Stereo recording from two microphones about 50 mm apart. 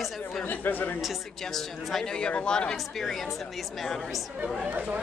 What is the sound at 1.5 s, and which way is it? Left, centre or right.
Speech, centre.